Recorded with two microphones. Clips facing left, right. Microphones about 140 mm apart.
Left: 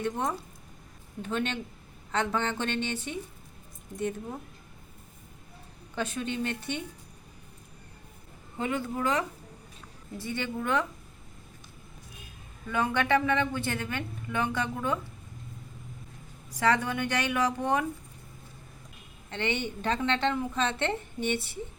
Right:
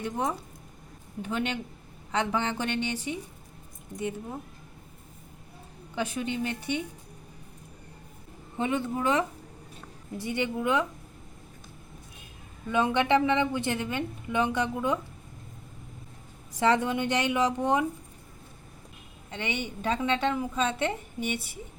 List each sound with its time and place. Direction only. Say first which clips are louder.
0.0 s a woman's voice: even; 10° right (ahead or behind)
6.0 s a woman's voice: right 1 dB; 10° right (ahead or behind)
8.5 s a woman's voice: right 2 dB; 20° right (ahead or behind)
12.7 s speech: right 2 dB; 20° right (ahead or behind)
16.5 s speech: right 2 dB; 20° right (ahead or behind)
19.3 s a woman's voice: left 2 dB; 10° right (ahead or behind)